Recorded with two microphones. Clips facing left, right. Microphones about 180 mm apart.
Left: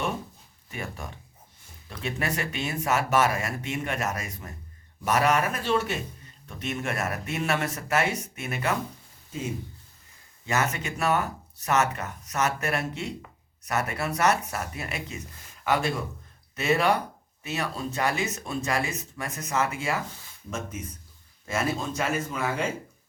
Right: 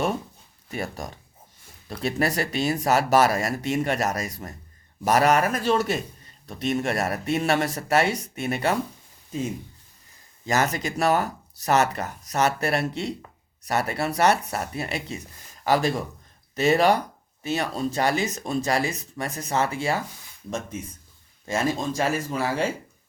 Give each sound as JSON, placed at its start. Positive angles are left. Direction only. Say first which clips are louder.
{"t": 0.7, "sound": "a man's voice", "louder": "right 5 dB", "side_deg": -35}
{"t": 10.4, "sound": "a man's voice", "louder": "right 4 dB", "side_deg": -35}